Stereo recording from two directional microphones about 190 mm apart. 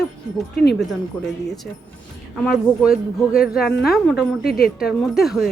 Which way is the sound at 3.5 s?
55° left (ahead or behind).